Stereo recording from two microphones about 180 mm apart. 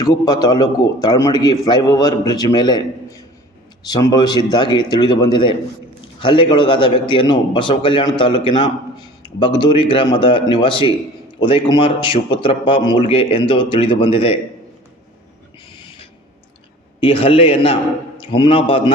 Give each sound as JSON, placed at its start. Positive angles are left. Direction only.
{"t": 0.0, "sound": "speech", "side_deg": 20}
{"t": 3.8, "sound": "speech", "side_deg": 20}
{"t": 17.0, "sound": "a man's voice", "side_deg": 30}